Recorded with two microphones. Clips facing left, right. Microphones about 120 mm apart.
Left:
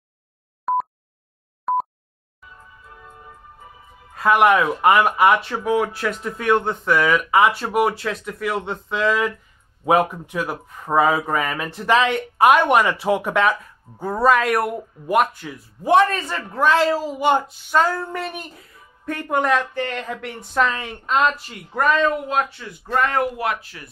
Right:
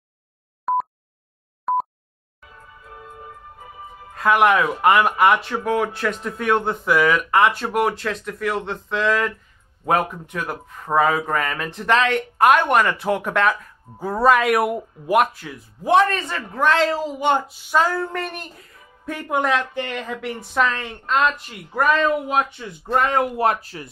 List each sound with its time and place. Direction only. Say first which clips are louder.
0.7 s a sound: even; centre (ahead or behind)
4.1 s speech: left 1 dB; centre (ahead or behind)
22.3 s speech: right 1 dB; 15° right (ahead or behind)
23.4 s speech: right 5 dB; 40° right (ahead or behind)